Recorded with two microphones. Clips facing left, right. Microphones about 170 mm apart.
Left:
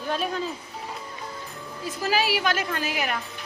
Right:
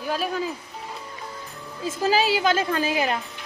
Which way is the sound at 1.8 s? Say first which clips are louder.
Right 4 dB; 25° right (ahead or behind).